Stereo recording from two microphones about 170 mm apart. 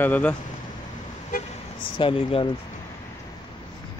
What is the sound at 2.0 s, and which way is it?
Speech, 30° left (ahead or behind).